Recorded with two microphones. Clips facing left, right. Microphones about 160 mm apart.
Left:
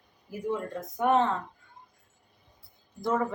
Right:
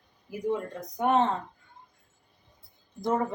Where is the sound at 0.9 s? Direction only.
20° right (ahead or behind).